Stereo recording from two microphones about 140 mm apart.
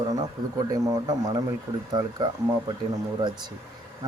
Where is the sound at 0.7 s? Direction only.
25° right (ahead or behind).